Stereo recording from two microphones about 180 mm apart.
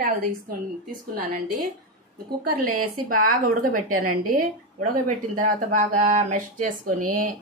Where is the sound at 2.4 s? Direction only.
55° right (ahead or behind).